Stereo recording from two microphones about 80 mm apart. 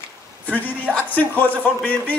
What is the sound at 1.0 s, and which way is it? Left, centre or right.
A man's voice, left.